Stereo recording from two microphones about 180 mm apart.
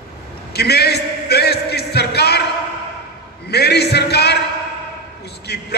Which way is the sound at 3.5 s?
65° left (ahead or behind).